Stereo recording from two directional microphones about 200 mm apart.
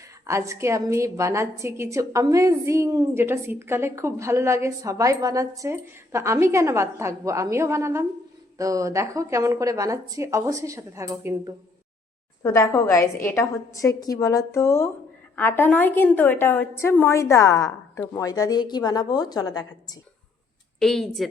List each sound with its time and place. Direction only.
0.3 s a woman's voice: 15° right (ahead or behind)
12.4 s a woman's voice: 15° left (ahead or behind)
20.7 s a woman's voice: centre (ahead or behind)